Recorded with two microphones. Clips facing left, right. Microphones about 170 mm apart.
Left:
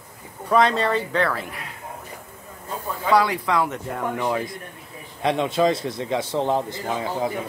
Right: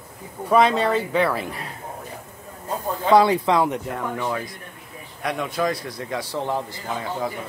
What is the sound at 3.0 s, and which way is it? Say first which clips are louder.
Speech: right 4 dB; 25° right (ahead or behind).